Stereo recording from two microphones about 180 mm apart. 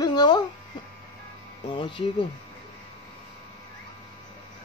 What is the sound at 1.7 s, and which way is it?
Speech, 25° left (ahead or behind).